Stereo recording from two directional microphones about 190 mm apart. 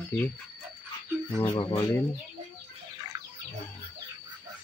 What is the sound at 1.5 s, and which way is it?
Speech, 25° left (ahead or behind).